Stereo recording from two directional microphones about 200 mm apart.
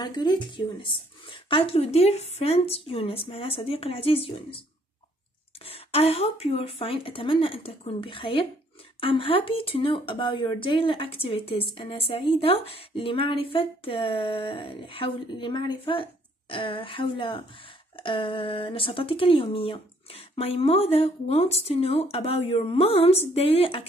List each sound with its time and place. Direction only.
0.0 s speech: 20° left (ahead or behind)
5.7 s speech: 30° left (ahead or behind)